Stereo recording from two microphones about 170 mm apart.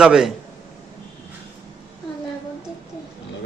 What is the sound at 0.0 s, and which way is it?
Speech, centre (ahead or behind).